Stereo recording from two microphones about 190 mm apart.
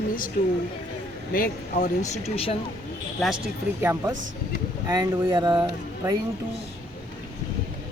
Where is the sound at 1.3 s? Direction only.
45° left (ahead or behind).